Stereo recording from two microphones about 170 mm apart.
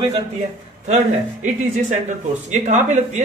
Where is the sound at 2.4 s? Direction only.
45° right (ahead or behind).